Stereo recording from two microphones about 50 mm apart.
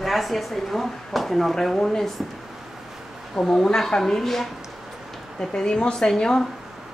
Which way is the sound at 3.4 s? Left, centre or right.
Centre.